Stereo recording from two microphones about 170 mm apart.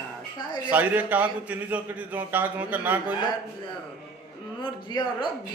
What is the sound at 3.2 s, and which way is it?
Speech, 25° left (ahead or behind).